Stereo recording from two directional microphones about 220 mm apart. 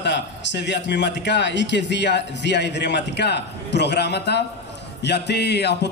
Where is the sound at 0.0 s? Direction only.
55° left (ahead or behind).